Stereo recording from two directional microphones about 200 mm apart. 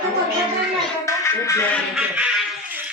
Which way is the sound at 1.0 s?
15° left (ahead or behind).